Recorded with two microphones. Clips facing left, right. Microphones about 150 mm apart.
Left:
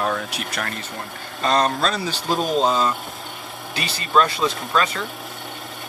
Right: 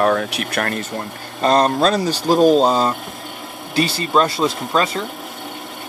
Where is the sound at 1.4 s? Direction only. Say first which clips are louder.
Right 5 dB; 35° right (ahead or behind).